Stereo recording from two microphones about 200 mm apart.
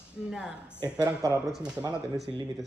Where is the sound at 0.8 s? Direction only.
20° right (ahead or behind).